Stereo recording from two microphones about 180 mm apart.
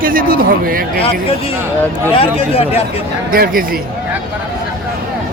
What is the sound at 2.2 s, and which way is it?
Speech, 35° left (ahead or behind).